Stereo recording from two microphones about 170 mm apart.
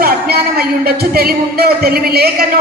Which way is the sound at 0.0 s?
65° right (ahead or behind).